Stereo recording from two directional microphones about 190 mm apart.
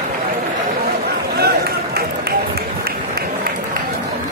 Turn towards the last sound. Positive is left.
turn(degrees=-55)  # may be behind; listen again after turning